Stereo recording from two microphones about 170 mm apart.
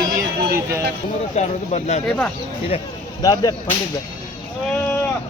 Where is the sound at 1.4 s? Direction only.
40° left (ahead or behind).